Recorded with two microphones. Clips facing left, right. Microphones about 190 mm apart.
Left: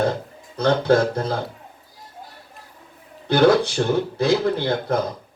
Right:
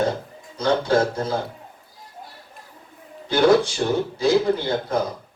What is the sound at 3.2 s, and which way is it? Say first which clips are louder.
Speech: left 1 dB; 60° left (ahead or behind).